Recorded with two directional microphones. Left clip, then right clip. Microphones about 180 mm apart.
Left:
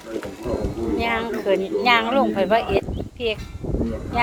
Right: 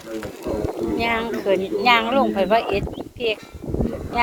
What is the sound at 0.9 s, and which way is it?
Speech, 10° right (ahead or behind).